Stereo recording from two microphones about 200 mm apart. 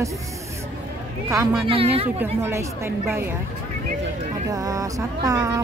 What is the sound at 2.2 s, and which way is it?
A woman's voice, 15° right (ahead or behind).